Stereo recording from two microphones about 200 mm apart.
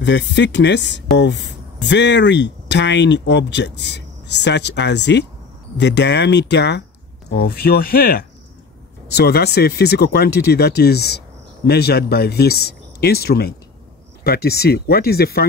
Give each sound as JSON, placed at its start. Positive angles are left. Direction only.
{"t": 0.0, "sound": "speech", "side_deg": 60}